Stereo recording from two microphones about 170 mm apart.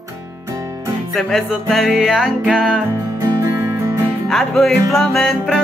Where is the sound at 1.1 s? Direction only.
Centre (ahead or behind).